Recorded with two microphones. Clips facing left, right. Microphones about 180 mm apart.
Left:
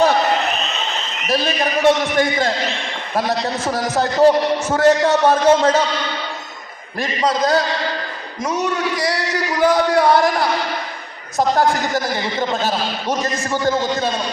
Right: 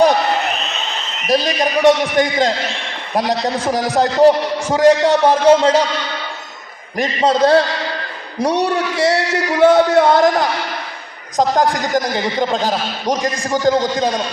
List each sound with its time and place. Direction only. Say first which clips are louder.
1.3 s a man's voice: right 3 dB; 15° right (ahead or behind)
6.9 s a man's voice: right 4 dB; 20° right (ahead or behind)